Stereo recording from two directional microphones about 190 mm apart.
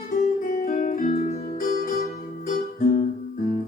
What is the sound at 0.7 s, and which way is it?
Music, 45° left (ahead or behind).